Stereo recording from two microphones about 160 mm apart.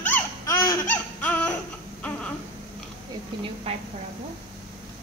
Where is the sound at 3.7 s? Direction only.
40° right (ahead or behind).